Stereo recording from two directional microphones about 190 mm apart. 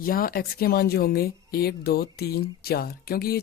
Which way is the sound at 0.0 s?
50° left (ahead or behind).